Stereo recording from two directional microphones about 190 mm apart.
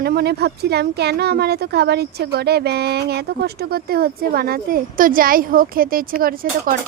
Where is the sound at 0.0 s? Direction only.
55° right (ahead or behind).